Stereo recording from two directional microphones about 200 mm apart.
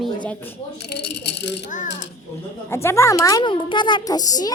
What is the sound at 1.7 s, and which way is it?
Speech, 40° left (ahead or behind).